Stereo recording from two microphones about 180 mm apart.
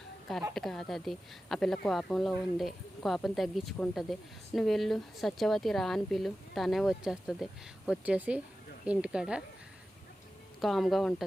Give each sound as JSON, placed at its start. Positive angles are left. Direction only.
{"t": 0.5, "sound": "speech", "side_deg": 0}
{"t": 10.6, "sound": "speech", "side_deg": 0}